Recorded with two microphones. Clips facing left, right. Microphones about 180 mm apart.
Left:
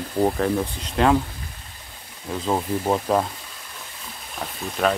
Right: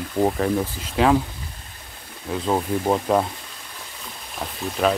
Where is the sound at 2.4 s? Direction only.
5° right (ahead or behind).